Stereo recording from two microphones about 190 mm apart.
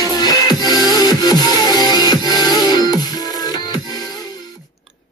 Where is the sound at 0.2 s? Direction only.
20° left (ahead or behind).